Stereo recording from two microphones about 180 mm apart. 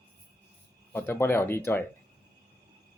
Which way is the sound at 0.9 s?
10° left (ahead or behind).